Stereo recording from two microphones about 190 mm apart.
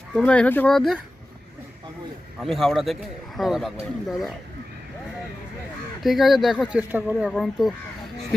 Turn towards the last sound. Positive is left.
turn(degrees=0)  # may be behind; listen again after turning